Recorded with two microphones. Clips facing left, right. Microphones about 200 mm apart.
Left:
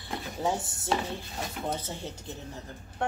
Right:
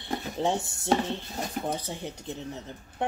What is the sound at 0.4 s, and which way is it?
Speech, 25° right (ahead or behind).